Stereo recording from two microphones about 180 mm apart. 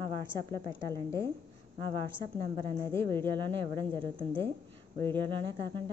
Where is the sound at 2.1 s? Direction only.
25° right (ahead or behind).